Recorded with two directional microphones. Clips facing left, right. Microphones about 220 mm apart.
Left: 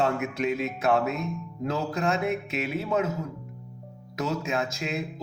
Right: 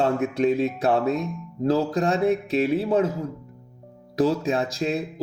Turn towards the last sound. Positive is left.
turn(degrees=-35)  # may be behind; listen again after turning